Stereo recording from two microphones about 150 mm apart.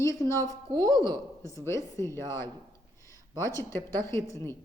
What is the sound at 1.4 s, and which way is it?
A woman's voice, 20° left (ahead or behind).